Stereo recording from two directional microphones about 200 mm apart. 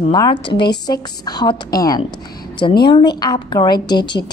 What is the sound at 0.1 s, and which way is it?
A woman's voice, 20° left (ahead or behind).